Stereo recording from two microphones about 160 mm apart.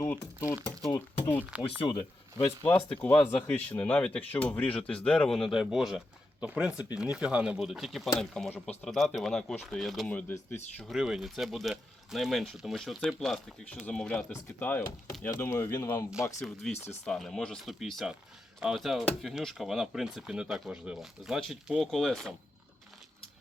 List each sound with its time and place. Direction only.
0.0 s speech: 15° left (ahead or behind)
1.5 s speech: 5° right (ahead or behind)
2.6 s speech: 10° left (ahead or behind)
10.8 s speech: 5° right (ahead or behind); by 16.1 s 20° left (ahead or behind)
16.6 s speech: 5° left (ahead or behind)